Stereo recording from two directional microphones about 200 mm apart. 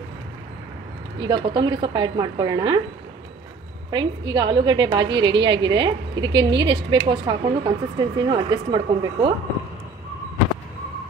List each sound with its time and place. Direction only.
1.2 s a woman's voice: 20° right (ahead or behind)
3.9 s a woman's voice: 25° right (ahead or behind)